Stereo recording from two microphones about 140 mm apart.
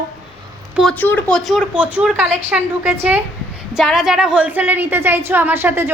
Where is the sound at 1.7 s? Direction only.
10° right (ahead or behind).